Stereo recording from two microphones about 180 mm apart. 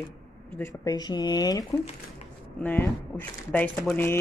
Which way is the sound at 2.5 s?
10° left (ahead or behind).